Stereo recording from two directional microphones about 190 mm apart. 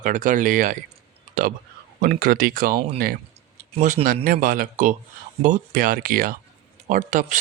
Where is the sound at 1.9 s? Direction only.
50° right (ahead or behind).